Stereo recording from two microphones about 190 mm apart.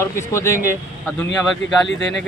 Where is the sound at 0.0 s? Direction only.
15° left (ahead or behind).